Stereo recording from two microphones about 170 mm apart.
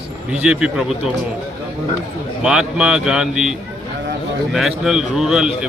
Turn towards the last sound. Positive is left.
turn(degrees=-5)  # may be behind; listen again after turning